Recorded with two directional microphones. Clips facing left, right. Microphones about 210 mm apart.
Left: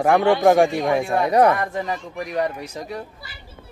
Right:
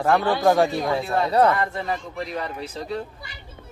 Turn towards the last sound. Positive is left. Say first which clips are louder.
# right 2 dB
turn(degrees=15)  # may be behind; listen again after turning